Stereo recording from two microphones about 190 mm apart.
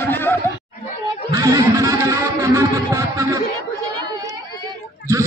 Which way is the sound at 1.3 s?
15° right (ahead or behind).